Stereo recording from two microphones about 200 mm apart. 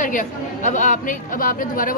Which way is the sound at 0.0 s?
40° left (ahead or behind).